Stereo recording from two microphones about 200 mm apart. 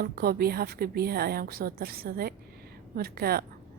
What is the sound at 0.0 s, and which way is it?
A woman's voice, 50° right (ahead or behind).